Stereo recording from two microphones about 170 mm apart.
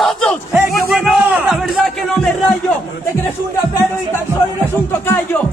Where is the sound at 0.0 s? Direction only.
5° left (ahead or behind).